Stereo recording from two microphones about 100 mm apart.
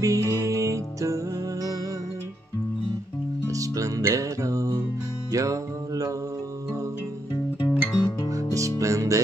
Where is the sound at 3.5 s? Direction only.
35° right (ahead or behind).